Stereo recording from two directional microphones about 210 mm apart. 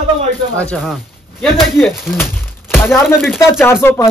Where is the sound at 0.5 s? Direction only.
5° left (ahead or behind).